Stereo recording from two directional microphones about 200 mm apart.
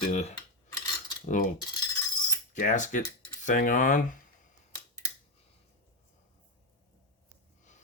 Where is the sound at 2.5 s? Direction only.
40° left (ahead or behind).